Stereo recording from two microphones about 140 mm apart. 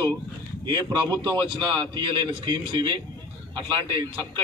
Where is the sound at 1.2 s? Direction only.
30° right (ahead or behind).